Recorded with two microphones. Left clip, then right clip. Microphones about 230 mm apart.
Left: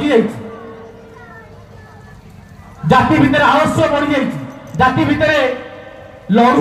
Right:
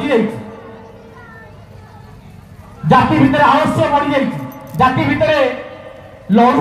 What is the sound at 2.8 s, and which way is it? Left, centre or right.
A man's voice, left.